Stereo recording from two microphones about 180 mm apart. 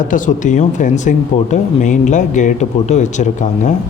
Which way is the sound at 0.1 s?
45° left (ahead or behind).